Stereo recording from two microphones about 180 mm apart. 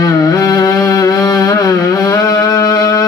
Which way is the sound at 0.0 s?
20° left (ahead or behind).